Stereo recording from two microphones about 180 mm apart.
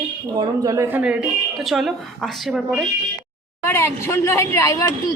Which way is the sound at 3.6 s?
15° left (ahead or behind).